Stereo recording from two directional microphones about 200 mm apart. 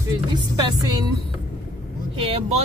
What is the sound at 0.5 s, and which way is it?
Speech, 20° right (ahead or behind).